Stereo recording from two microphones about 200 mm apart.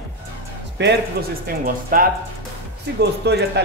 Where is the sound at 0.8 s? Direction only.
60° right (ahead or behind).